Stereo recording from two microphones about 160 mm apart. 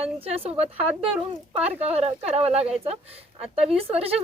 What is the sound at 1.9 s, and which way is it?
A woman's voice, 40° right (ahead or behind).